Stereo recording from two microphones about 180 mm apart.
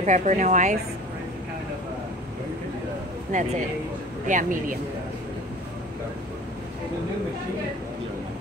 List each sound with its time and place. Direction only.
0.0 s a woman's voice: 40° right (ahead or behind)
3.3 s a woman's voice: 45° right (ahead or behind)